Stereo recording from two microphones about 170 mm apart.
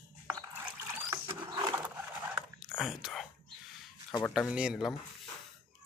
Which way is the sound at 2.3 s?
5° right (ahead or behind).